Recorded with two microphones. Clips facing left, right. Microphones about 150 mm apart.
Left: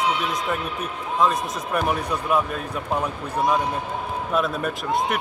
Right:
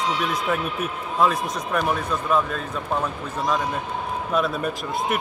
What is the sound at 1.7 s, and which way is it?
Speech, 10° left (ahead or behind).